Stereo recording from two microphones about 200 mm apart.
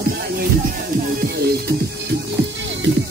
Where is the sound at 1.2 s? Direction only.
55° right (ahead or behind).